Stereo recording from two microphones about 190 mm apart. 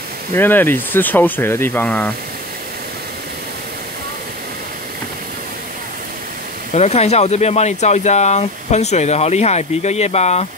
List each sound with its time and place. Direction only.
0.3 s speech: 10° left (ahead or behind)
6.7 s speech: 35° left (ahead or behind)